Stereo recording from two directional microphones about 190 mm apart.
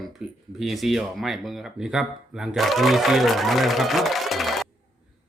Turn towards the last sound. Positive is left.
turn(degrees=0)  # may be behind; listen again after turning